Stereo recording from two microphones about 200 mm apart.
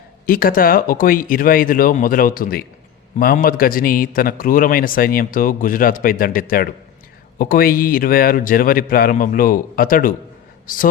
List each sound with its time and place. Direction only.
0.3 s a man's voice: 45° left (ahead or behind)